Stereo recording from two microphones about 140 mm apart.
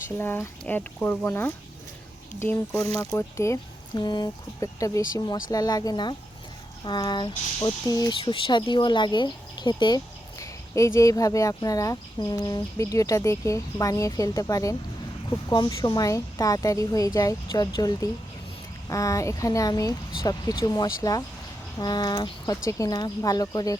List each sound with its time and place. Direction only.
0.2 s speech: 15° left (ahead or behind); by 6.1 s 30° left (ahead or behind)
6.8 s a sound: 30° left (ahead or behind)
8.2 s speech: 35° left (ahead or behind)